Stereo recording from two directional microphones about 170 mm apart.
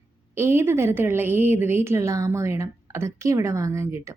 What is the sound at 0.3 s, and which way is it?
A woman's voice, 15° right (ahead or behind).